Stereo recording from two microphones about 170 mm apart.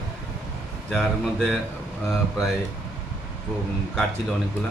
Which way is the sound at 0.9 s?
Centre (ahead or behind).